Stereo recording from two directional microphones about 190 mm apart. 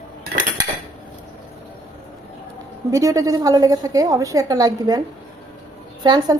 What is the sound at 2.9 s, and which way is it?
A woman's voice, 15° right (ahead or behind).